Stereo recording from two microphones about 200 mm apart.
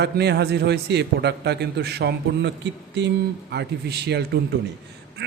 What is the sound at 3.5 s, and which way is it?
Speech, 55° right (ahead or behind).